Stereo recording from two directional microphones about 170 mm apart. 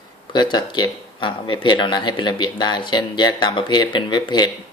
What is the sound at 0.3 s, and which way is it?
Speech, 25° left (ahead or behind).